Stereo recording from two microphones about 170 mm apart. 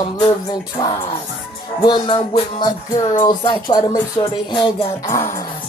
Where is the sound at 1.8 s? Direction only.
30° left (ahead or behind).